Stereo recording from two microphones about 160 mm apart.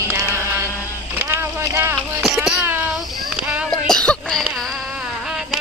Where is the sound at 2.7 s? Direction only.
15° right (ahead or behind).